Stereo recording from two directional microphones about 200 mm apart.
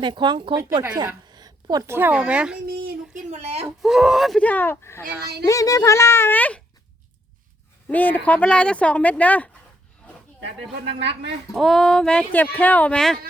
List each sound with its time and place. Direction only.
0.0 s a woman's voice: 25° right (ahead or behind); by 2.6 s 5° right (ahead or behind)
2.6 s a sound: 50° right (ahead or behind)
3.2 s a sound: 35° right (ahead or behind)
3.8 s speech: centre (ahead or behind)
7.9 s speech: 10° left (ahead or behind)
10.4 s speech: 60° right (ahead or behind)
11.5 s speech: centre (ahead or behind)